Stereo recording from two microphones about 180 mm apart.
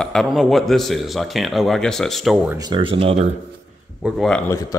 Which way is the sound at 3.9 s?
5° right (ahead or behind).